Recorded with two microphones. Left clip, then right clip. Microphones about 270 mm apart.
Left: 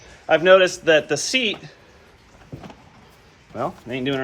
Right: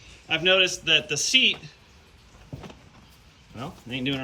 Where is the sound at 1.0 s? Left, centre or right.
Centre.